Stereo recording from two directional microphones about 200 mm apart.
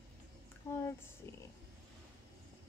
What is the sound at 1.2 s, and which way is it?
Speech, 15° left (ahead or behind).